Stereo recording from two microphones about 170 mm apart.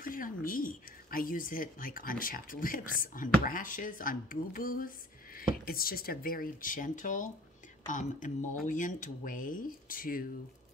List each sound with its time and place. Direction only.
0.0 s speech: 55° left (ahead or behind)